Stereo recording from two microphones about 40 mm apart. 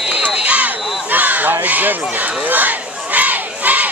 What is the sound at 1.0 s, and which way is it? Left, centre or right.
Crow, right.